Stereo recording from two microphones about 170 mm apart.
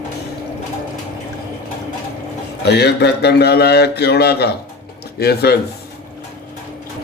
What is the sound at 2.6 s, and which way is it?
A man's voice, 80° left.